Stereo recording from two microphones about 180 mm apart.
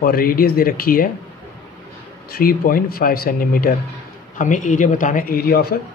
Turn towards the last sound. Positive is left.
turn(degrees=60)  # may be behind; listen again after turning